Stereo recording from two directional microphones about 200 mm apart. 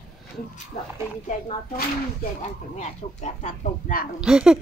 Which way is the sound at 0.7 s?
30° left (ahead or behind).